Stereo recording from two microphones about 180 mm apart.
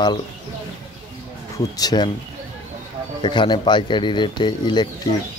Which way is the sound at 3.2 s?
25° left (ahead or behind).